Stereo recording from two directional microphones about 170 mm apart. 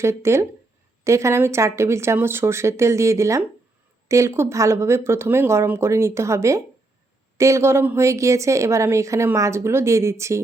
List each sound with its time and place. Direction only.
0.0 s a woman's voice: 15° right (ahead or behind)